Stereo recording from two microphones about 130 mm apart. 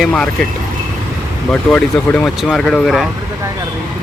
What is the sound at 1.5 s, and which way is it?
Speech, 5° left (ahead or behind).